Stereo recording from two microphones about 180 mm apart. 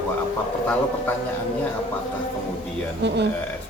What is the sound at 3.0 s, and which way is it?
Speech, 70° right (ahead or behind).